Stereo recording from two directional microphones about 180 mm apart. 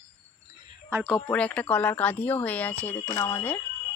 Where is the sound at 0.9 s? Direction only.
10° right (ahead or behind).